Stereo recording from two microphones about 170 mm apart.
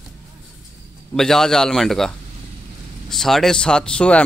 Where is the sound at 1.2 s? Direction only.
5° left (ahead or behind).